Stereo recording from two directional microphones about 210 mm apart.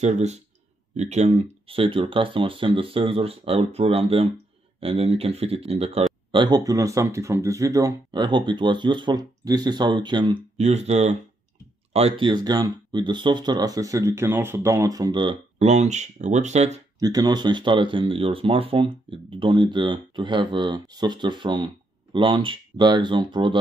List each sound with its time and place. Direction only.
0.0 s speech: 30° right (ahead or behind)
17.0 s speech: 20° right (ahead or behind)